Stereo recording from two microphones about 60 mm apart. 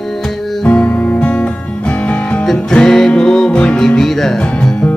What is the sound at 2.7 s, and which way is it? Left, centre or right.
Music, centre.